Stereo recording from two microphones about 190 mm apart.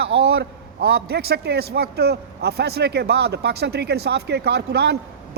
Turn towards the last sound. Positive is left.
turn(degrees=-60)  # may be behind; listen again after turning